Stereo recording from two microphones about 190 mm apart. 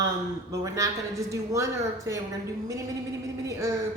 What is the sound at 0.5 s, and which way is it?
Speech, 15° right (ahead or behind).